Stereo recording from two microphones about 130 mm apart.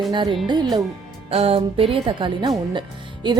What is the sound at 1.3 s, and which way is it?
Speech, 45° right (ahead or behind).